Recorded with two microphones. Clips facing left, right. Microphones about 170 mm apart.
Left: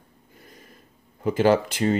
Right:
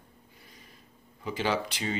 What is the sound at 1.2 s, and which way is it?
Speech, 50° left (ahead or behind).